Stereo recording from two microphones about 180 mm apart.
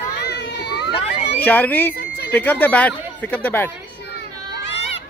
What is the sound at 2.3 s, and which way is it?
Speech, 10° left (ahead or behind).